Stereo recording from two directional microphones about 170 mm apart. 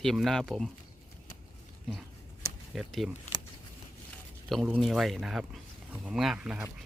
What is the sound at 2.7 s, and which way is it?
Speech, centre (ahead or behind).